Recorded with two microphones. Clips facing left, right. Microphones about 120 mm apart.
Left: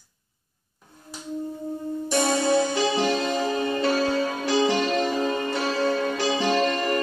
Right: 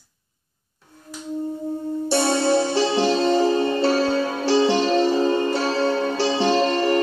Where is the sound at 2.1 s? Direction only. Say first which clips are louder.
Right 2 dB; 30° right (ahead or behind).